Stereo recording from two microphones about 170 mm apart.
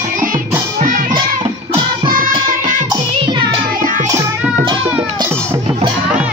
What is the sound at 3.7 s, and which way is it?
Music, 55° right (ahead or behind).